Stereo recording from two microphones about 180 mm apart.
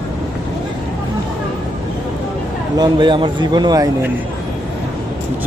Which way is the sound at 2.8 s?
25° right (ahead or behind).